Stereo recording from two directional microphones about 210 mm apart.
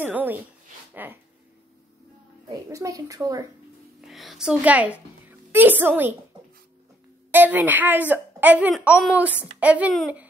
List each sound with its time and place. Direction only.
0.0 s a woman's voice: 10° right (ahead or behind)
2.7 s a woman's voice: 15° right (ahead or behind)
4.0 s a woman's voice: centre (ahead or behind)
7.2 s a woman's voice: 10° right (ahead or behind)